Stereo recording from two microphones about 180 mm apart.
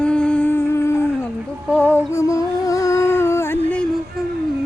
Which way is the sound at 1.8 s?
10° left (ahead or behind).